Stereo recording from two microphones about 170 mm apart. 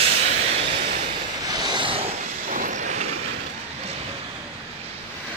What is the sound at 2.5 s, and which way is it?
Vehicle, 50° right (ahead or behind).